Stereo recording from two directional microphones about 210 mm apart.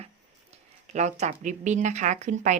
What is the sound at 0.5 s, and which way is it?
Speech, 35° right (ahead or behind).